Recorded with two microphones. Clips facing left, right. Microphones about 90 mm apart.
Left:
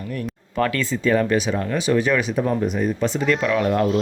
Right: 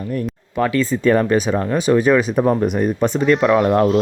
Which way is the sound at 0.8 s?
45° right (ahead or behind).